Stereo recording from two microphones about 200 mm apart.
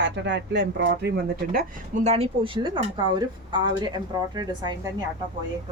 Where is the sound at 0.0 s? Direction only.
65° right (ahead or behind).